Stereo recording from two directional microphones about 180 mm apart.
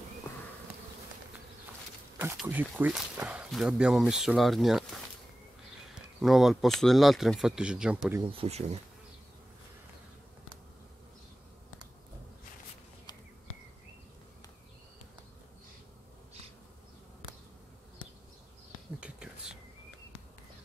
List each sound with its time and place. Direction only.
0.3 s bee: 10° left (ahead or behind)
2.1 s speech: 15° right (ahead or behind)
6.2 s speech: centre (ahead or behind)
8.2 s speech: 30° right (ahead or behind)
18.9 s whispering: 5° right (ahead or behind)